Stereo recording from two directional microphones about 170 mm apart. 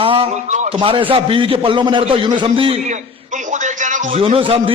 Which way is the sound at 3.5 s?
45° right (ahead or behind).